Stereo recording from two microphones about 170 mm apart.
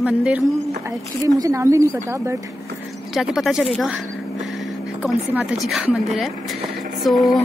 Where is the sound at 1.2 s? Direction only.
20° right (ahead or behind).